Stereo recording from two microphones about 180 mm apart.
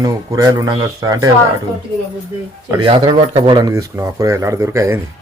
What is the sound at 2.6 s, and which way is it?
Speech, 25° right (ahead or behind).